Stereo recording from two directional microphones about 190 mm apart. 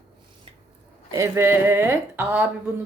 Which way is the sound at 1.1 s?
15° right (ahead or behind).